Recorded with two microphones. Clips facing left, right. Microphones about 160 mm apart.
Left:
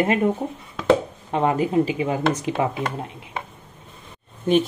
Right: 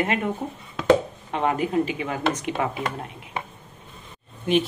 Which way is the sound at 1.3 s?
25° left (ahead or behind).